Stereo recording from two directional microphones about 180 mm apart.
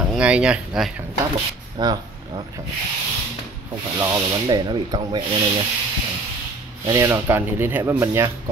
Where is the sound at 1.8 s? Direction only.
25° right (ahead or behind).